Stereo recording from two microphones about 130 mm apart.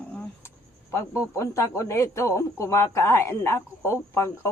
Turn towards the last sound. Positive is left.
turn(degrees=20)  # may be behind; listen again after turning